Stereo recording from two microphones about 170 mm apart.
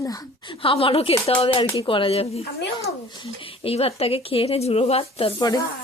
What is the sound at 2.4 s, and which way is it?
Speech, 75° left (ahead or behind).